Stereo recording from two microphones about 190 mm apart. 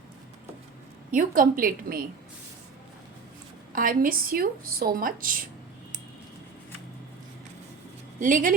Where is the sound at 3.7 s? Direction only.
45° right (ahead or behind).